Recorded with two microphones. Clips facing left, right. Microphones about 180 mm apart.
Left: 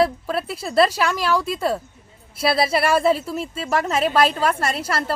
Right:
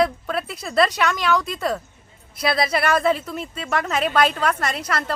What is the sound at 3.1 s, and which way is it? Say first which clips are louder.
Speech: left 3 dB; 5° left (ahead or behind).